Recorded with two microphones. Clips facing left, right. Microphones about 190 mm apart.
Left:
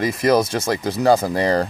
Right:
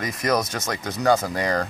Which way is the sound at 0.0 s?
30° left (ahead or behind).